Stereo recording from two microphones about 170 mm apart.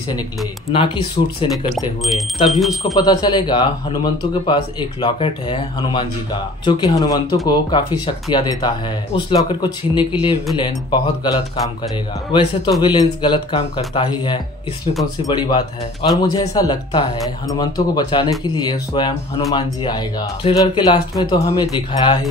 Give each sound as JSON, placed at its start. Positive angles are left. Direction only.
{"t": 0.7, "sound": "speech", "side_deg": 30}
{"t": 2.9, "sound": "speech", "side_deg": 25}